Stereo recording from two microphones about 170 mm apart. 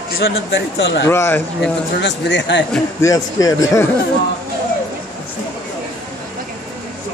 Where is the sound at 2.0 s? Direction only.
90° left.